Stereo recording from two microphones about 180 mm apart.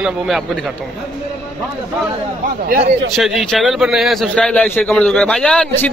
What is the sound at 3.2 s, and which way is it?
A man's voice, centre (ahead or behind).